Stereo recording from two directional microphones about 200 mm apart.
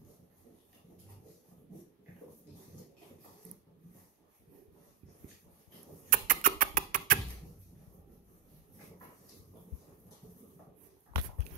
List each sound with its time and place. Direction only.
6.0 s rodents: 40° right (ahead or behind)